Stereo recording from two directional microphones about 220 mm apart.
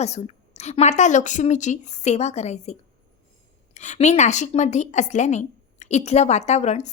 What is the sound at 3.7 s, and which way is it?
A woman's voice, 30° left (ahead or behind).